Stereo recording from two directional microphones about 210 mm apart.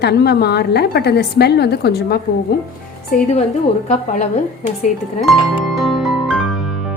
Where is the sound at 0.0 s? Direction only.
50° left (ahead or behind).